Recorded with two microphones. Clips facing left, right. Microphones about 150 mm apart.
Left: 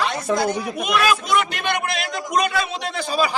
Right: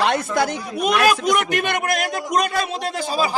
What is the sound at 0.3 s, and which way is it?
Speech, 70° left (ahead or behind).